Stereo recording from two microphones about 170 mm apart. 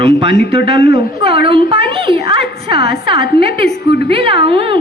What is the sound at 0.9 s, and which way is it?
A woman's voice, 30° right (ahead or behind).